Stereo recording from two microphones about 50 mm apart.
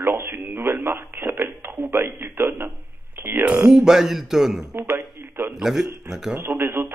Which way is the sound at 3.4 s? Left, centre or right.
Centre.